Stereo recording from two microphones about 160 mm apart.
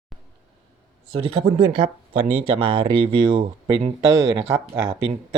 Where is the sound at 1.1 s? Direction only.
35° right (ahead or behind).